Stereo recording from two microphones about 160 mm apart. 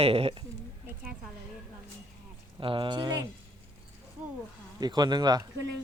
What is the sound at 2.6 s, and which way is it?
Speech, 30° right (ahead or behind).